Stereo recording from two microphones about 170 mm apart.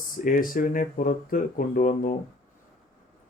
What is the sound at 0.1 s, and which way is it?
Speech, 55° left (ahead or behind).